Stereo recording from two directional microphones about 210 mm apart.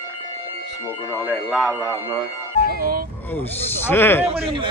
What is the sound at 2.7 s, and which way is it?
Speech, 45° right (ahead or behind).